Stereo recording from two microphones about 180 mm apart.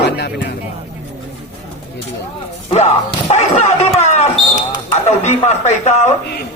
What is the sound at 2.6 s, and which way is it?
Speech, 35° left (ahead or behind).